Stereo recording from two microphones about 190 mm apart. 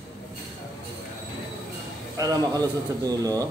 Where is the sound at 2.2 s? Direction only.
20° right (ahead or behind).